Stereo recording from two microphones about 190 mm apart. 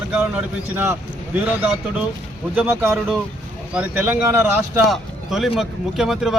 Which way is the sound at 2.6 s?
10° right (ahead or behind).